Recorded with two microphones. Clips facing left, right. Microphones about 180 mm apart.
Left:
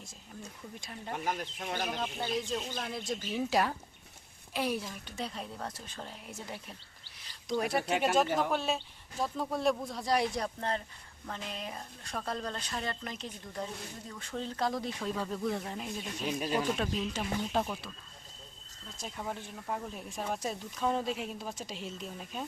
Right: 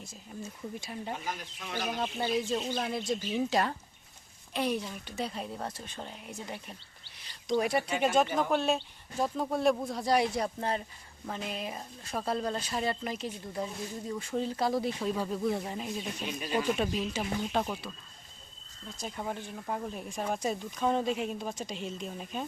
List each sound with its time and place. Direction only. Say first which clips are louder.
0.8 s speech: right 3 dB; 5° right (ahead or behind)
1.1 s speech: left 3 dB; 50° left (ahead or behind)
2.0 s speech: right 4 dB; 5° right (ahead or behind)
18.9 s speech: right 2 dB; centre (ahead or behind)